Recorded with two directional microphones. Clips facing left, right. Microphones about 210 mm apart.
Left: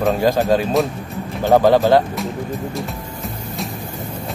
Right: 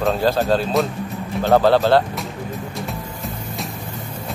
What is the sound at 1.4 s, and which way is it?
Speech, 15° left (ahead or behind).